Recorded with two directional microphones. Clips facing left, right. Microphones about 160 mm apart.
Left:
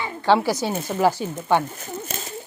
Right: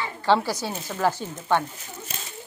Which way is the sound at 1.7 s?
50° left (ahead or behind).